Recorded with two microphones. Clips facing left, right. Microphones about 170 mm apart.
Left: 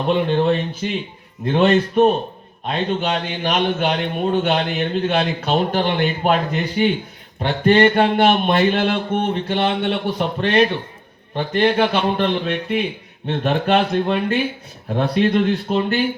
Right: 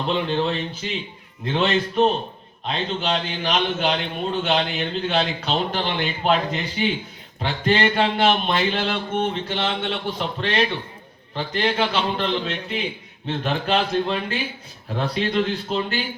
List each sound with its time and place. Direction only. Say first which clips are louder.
0.1 s a man's voice: left 6 dB; 50° left (ahead or behind)